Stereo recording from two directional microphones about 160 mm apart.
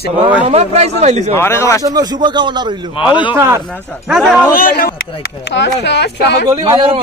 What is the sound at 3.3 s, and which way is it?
Speech, 15° right (ahead or behind).